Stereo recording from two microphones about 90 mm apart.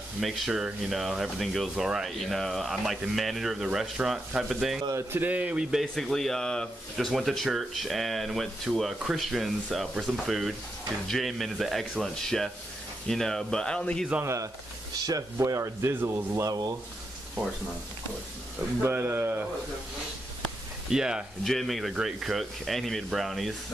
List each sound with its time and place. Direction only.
0.2 s speech: 5° right (ahead or behind)
4.9 s speech: 25° right (ahead or behind)
5.3 s speech: 15° right (ahead or behind); by 14.0 s 10° left (ahead or behind)
14.2 s speech: 35° right (ahead or behind)
16.4 s rub: 50° right (ahead or behind)
18.8 s speech: 25° right (ahead or behind)
20.9 s speech: 5° right (ahead or behind)